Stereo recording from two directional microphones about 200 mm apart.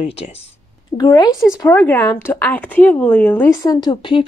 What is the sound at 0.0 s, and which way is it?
Speech, 30° left (ahead or behind).